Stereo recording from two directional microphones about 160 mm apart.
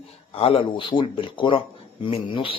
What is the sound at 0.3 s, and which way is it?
A man's voice, 35° left (ahead or behind).